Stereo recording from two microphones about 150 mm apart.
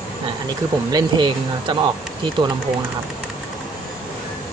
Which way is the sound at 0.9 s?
30° right (ahead or behind).